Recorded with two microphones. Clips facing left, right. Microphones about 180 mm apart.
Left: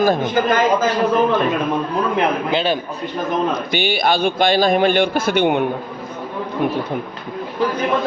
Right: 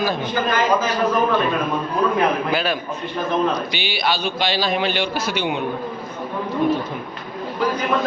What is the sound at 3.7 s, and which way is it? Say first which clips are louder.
A man's voice: left 6 dB; 50° left (ahead or behind).